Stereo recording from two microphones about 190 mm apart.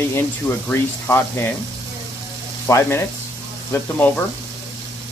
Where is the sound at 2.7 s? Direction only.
10° left (ahead or behind).